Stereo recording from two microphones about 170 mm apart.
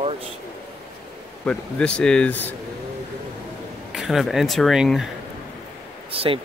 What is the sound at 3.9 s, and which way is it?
Speech, centre (ahead or behind).